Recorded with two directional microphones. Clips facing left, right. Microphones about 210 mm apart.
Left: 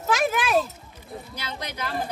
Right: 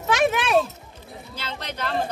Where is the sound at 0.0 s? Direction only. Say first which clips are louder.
Right 2 dB; centre (ahead or behind).